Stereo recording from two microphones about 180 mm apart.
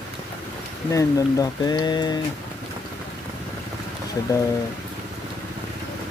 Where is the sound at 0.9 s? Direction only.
20° left (ahead or behind).